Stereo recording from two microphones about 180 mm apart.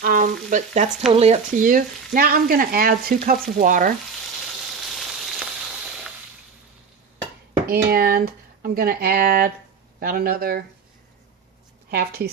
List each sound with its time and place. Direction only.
0.0 s speech: 50° right (ahead or behind)
4.8 s frying: centre (ahead or behind)
7.9 s speech: 60° right (ahead or behind)
11.9 s speech: 60° right (ahead or behind)